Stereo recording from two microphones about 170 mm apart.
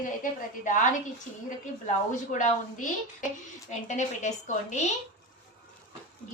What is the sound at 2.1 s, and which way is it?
A woman's voice, 50° left (ahead or behind).